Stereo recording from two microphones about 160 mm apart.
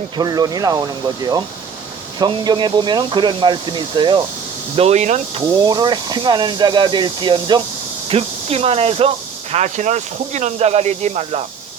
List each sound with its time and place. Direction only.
0.2 s speech: 25° right (ahead or behind)
4.8 s speech: 45° right (ahead or behind)
5.5 s speech: 25° right (ahead or behind)